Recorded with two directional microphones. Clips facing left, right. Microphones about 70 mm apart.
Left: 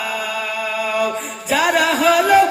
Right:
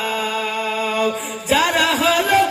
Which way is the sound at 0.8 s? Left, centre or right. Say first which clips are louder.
Left 1 dB; left.